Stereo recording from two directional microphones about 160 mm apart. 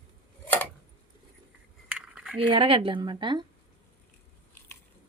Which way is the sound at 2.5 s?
35° right (ahead or behind).